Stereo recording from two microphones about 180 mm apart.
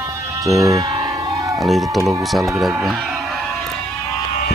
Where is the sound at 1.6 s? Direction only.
Centre (ahead or behind).